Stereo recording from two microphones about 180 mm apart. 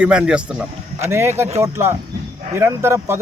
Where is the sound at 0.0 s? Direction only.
5° right (ahead or behind).